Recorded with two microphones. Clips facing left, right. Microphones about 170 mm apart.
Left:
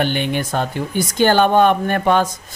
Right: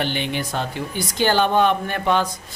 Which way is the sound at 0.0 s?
50° left (ahead or behind).